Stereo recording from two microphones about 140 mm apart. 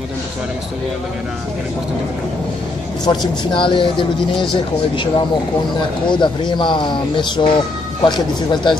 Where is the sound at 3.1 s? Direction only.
40° left (ahead or behind).